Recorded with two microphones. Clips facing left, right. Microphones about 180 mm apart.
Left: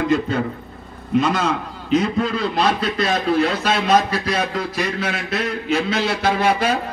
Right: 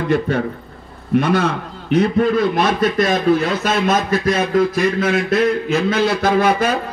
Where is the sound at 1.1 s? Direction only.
60° right (ahead or behind).